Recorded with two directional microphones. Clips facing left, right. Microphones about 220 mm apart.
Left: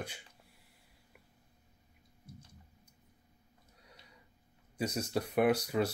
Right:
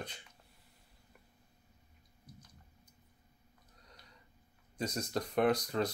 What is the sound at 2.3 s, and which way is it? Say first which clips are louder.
Clicking: left 4 dB; 25° left (ahead or behind).